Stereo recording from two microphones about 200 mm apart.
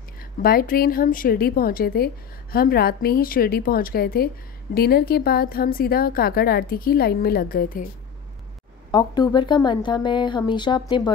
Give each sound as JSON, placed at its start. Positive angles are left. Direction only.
{"t": 0.2, "sound": "a woman's voice", "side_deg": 45}
{"t": 8.9, "sound": "a woman's voice", "side_deg": 20}